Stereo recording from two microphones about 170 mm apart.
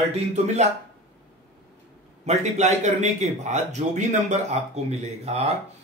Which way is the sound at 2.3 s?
40° right (ahead or behind).